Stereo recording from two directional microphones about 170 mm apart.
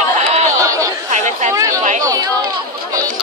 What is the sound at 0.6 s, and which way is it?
Chatter, 20° right (ahead or behind).